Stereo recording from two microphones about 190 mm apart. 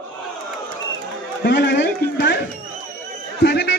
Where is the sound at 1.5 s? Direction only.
70° left (ahead or behind).